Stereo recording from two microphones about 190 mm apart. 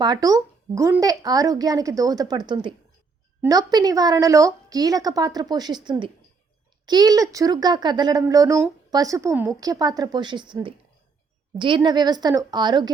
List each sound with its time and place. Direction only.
0.0 s speech: 20° right (ahead or behind)